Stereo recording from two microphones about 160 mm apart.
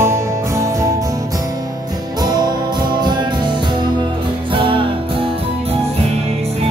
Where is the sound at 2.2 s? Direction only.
25° right (ahead or behind).